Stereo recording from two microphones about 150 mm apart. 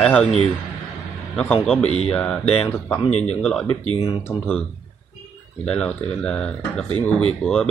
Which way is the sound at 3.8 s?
40° left (ahead or behind).